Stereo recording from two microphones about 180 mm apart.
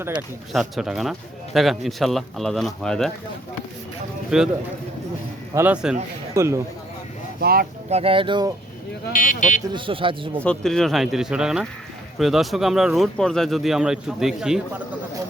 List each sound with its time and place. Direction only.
0.5 s speech: centre (ahead or behind)
4.3 s speech: 5° right (ahead or behind)
5.5 s speech: 10° right (ahead or behind)
6.3 s speech: 15° right (ahead or behind)
7.3 s speech: 60° right (ahead or behind)
7.9 s speech: 35° right (ahead or behind)
9.1 s speech: 45° left (ahead or behind)
9.7 s speech: 30° right (ahead or behind)
10.4 s speech: 5° left (ahead or behind)